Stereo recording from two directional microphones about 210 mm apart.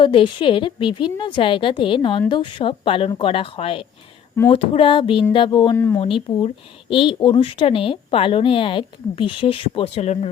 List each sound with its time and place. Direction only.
0.0 s a woman's voice: 25° left (ahead or behind)
6.0 s a woman's voice: 25° left (ahead or behind)